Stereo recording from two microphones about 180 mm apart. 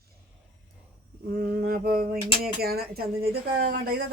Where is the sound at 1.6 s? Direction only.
55° right (ahead or behind).